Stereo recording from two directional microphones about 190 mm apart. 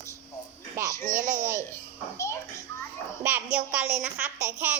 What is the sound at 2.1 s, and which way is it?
Speech, 15° left (ahead or behind).